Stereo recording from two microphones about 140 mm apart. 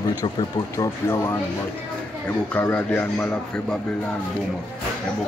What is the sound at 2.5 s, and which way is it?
Speech, 15° left (ahead or behind).